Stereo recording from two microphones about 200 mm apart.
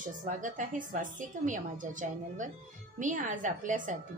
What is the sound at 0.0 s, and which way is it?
A woman's voice, 40° right (ahead or behind).